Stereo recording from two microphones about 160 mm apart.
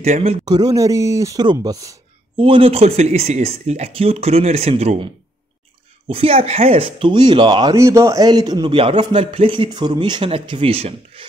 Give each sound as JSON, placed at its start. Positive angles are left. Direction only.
{"t": 0.0, "sound": "speech", "side_deg": -45}
{"t": 0.5, "sound": "speech", "side_deg": -25}
{"t": 2.3, "sound": "speech", "side_deg": -35}